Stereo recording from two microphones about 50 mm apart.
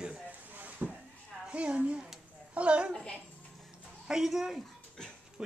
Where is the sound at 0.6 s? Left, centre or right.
Right.